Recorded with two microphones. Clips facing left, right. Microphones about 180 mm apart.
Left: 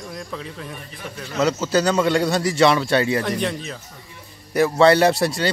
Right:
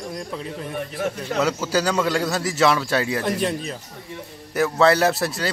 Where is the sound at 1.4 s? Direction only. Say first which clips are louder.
Left 3 dB; 5° right (ahead or behind).